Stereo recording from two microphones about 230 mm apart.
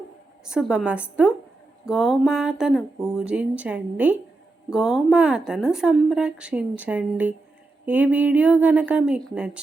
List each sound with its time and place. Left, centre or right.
0.4 s a woman's voice: centre